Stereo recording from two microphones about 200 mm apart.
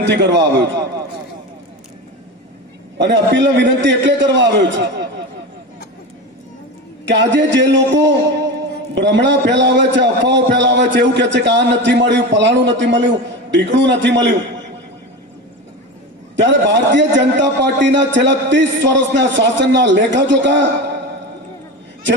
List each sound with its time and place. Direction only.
0.0 s a man's voice: 60° right (ahead or behind)
3.0 s a man's voice: 60° right (ahead or behind)
7.0 s a man's voice: 65° right (ahead or behind)
16.3 s a man's voice: 65° right (ahead or behind)